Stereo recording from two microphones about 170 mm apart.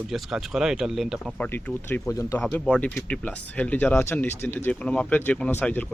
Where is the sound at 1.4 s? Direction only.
10° left (ahead or behind).